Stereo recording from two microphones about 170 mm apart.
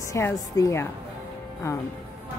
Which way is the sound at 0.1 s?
20° left (ahead or behind).